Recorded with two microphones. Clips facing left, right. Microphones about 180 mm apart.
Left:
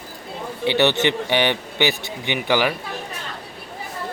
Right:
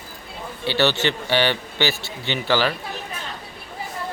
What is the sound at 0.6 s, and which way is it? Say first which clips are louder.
Speech: left 2 dB; 20° left (ahead or behind).